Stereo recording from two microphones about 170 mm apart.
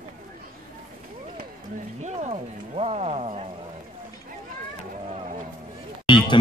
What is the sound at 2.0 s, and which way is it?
Music, 40° right (ahead or behind).